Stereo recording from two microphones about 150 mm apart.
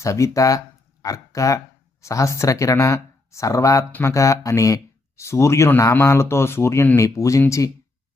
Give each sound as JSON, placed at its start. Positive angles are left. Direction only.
{"t": 0.0, "sound": "speech", "side_deg": 20}